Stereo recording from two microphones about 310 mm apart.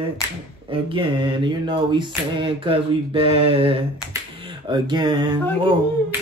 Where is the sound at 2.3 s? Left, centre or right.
Centre.